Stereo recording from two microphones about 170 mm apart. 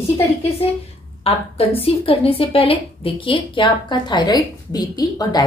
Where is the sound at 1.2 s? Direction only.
35° left (ahead or behind).